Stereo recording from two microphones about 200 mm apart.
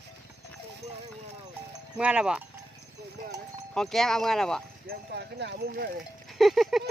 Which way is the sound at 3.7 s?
Centre (ahead or behind).